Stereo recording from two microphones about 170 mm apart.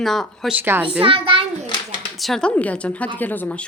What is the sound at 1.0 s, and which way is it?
Speech, 30° right (ahead or behind).